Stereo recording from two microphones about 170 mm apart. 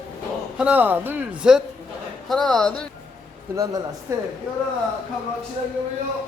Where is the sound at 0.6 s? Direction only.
10° right (ahead or behind).